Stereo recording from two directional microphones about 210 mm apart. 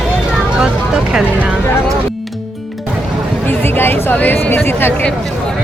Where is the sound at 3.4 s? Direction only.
10° left (ahead or behind).